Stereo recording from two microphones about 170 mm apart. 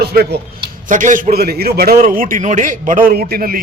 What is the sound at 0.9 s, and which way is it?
A man's voice, 50° right (ahead or behind).